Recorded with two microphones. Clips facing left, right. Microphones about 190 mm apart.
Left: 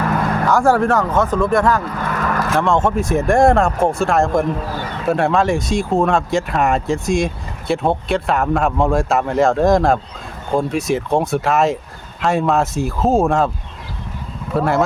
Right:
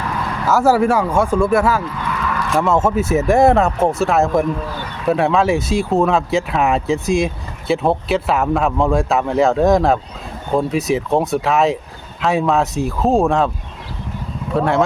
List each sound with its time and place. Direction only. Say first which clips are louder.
0.4 s speech: right 2 dB; 5° right (ahead or behind)
2.0 s vehicle: left 2 dB; 45° left (ahead or behind)
2.5 s speech: right 2 dB; 5° right (ahead or behind)
14.5 s speech: right 1 dB; centre (ahead or behind)